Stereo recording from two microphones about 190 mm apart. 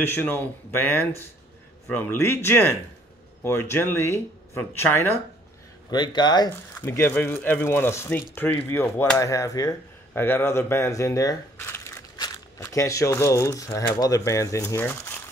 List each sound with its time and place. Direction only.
0.0 s speech: 10° left (ahead or behind)
5.9 s speech: 25° left (ahead or behind)
6.8 s speech: 10° left (ahead or behind)